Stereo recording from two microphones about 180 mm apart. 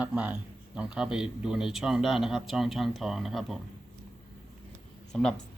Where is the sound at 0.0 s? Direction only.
10° right (ahead or behind).